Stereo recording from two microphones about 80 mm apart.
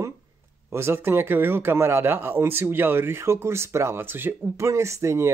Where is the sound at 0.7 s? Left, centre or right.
Right.